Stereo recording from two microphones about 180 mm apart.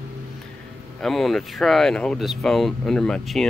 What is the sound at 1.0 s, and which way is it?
Speech, centre (ahead or behind).